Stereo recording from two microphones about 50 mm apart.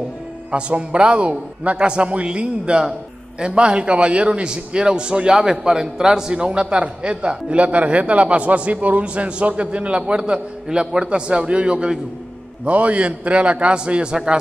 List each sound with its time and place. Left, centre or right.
0.5 s a man's voice: right